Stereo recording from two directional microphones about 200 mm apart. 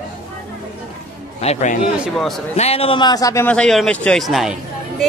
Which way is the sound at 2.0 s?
Centre (ahead or behind).